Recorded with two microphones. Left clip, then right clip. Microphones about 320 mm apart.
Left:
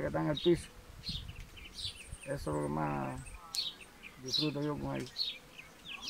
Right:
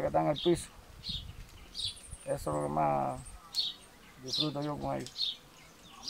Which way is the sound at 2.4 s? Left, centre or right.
Centre.